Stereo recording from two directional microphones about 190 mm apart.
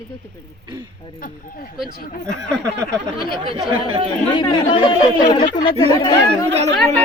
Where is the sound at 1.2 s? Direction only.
50° left (ahead or behind).